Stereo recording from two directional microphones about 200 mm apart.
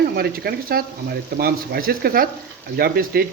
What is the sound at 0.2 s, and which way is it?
Speech, 50° right (ahead or behind).